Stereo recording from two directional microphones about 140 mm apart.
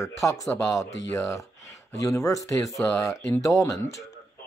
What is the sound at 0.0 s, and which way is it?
Speech, 20° left (ahead or behind).